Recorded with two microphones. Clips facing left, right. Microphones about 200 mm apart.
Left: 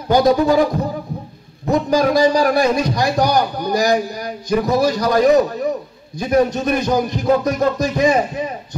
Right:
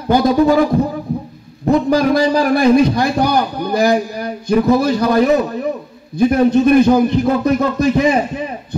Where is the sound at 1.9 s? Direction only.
55° right (ahead or behind).